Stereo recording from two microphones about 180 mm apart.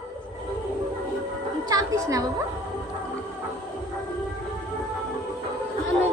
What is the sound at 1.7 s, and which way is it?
Music, 20° right (ahead or behind).